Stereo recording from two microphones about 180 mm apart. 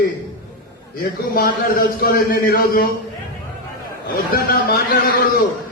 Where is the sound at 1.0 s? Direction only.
55° left (ahead or behind).